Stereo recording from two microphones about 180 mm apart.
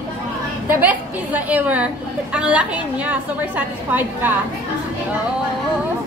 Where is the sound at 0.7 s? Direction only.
10° right (ahead or behind).